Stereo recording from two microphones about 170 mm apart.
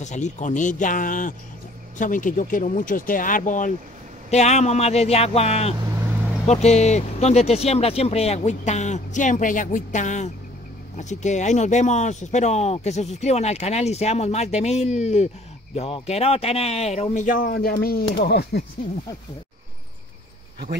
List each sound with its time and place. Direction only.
0.0 s speech: 45° left (ahead or behind); by 18.6 s 70° left (ahead or behind)